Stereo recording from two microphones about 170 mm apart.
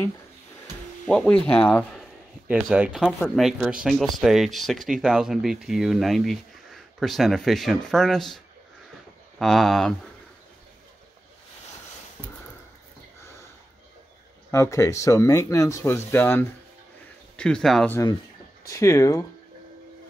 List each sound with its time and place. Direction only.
1.0 s speech: 5° left (ahead or behind)
2.4 s speech: 10° right (ahead or behind)
9.4 s speech: centre (ahead or behind)
14.5 s speech: 15° left (ahead or behind)
18.6 s speech: 15° left (ahead or behind)